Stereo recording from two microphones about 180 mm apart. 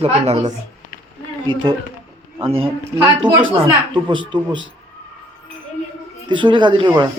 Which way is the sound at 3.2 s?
25° right (ahead or behind).